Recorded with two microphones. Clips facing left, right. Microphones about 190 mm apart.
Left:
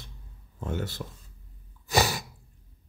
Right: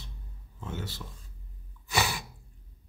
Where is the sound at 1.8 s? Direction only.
40° left (ahead or behind).